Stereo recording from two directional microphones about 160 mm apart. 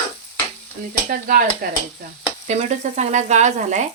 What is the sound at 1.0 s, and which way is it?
Speech, 55° right (ahead or behind).